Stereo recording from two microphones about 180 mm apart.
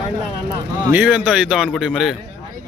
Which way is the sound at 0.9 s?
10° right (ahead or behind).